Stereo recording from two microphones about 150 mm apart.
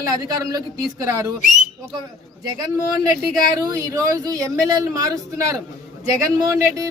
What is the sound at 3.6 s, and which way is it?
Speech, 20° right (ahead or behind).